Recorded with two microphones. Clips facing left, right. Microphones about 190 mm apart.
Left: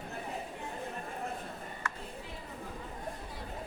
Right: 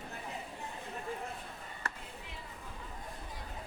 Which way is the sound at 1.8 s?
35° right (ahead or behind).